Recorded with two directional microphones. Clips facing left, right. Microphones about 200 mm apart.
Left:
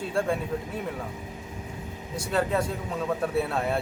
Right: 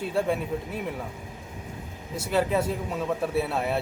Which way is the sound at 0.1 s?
5° right (ahead or behind).